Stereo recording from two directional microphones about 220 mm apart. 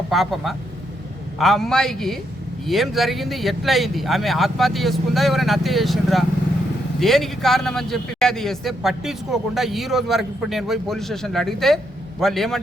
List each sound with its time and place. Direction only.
0.1 s a man's voice: centre (ahead or behind)